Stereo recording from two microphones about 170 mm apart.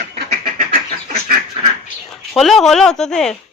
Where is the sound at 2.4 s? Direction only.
Centre (ahead or behind).